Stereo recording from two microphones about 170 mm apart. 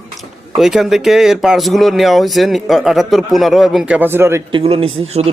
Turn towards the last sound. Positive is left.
turn(degrees=-40)  # may be behind; listen again after turning